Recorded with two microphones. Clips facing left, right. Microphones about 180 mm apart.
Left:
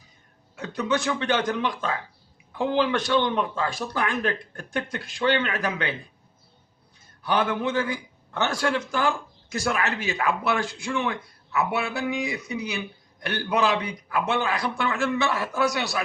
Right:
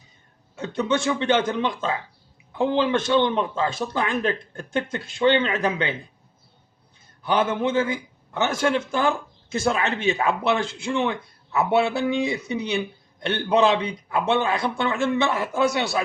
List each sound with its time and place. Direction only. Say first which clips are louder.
0.5 s a man's voice: right 2 dB; 25° right (ahead or behind)
7.2 s a man's voice: right 2 dB; 20° right (ahead or behind)